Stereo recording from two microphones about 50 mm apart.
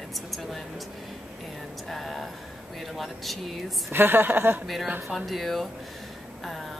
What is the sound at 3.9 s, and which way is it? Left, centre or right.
Speech, right.